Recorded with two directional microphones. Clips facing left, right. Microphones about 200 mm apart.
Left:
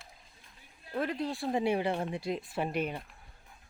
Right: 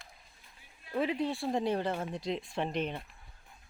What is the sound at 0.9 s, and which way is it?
Speech, 10° right (ahead or behind).